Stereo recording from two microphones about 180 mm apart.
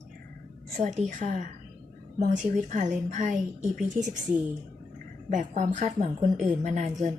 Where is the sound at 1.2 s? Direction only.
40° right (ahead or behind).